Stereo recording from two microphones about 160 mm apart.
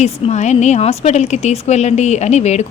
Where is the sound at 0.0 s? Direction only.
45° left (ahead or behind).